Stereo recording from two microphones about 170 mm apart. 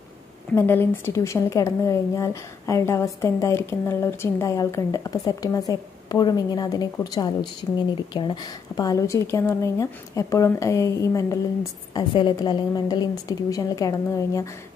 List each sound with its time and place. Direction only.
0.5 s a woman's voice: 15° left (ahead or behind)